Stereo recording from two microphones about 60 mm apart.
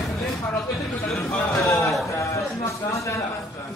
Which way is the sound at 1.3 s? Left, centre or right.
Left.